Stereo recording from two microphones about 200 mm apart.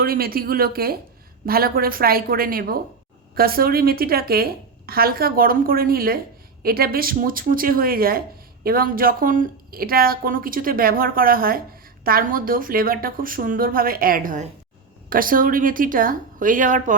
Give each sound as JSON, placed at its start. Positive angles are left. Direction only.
{"t": 0.0, "sound": "a woman's voice", "side_deg": -50}